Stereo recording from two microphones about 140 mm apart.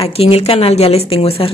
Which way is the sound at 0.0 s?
45° left (ahead or behind).